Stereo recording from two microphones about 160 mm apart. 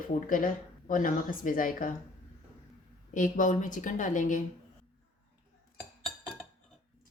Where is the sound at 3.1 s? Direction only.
55° left (ahead or behind).